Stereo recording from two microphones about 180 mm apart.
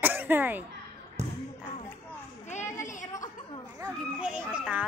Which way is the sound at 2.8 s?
45° left (ahead or behind).